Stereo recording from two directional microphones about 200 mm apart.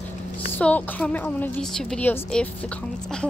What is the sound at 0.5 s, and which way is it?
A woman's voice, 10° left (ahead or behind).